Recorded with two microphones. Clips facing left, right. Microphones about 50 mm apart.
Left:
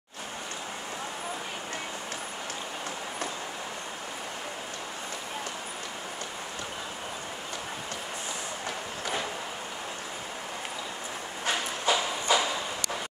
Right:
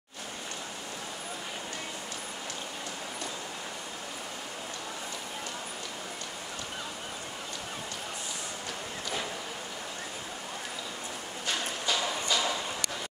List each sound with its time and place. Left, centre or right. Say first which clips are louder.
11.9 s music: left 5 dB; left